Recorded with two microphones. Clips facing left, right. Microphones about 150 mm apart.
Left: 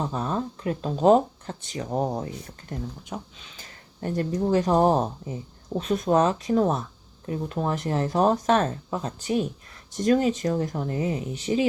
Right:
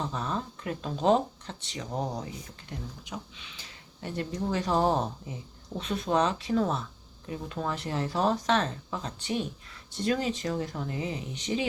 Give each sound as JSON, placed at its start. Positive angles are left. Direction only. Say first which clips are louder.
{"t": 0.0, "sound": "speech", "louder": "left 5 dB", "side_deg": 40}